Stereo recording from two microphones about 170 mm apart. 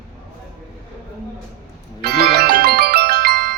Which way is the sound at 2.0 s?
70° right (ahead or behind).